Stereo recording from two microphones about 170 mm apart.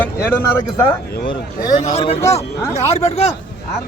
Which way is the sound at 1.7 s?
40° left (ahead or behind).